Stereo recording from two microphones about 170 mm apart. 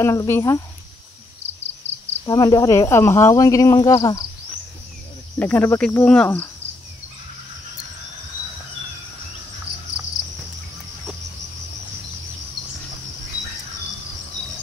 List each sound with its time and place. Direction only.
0.0 s speech: 15° left (ahead or behind)
2.2 s speech: 20° left (ahead or behind)
5.4 s speech: 10° left (ahead or behind)